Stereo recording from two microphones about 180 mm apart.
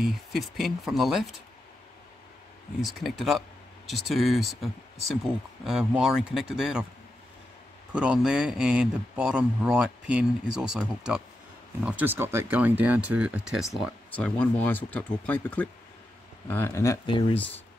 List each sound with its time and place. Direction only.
0.0 s speech: centre (ahead or behind)
2.8 s speech: centre (ahead or behind)
7.9 s speech: 5° right (ahead or behind); by 17.5 s 30° left (ahead or behind)